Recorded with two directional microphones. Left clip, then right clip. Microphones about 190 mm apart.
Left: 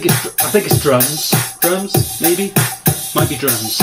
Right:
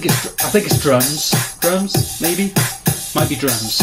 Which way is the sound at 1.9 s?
25° left (ahead or behind).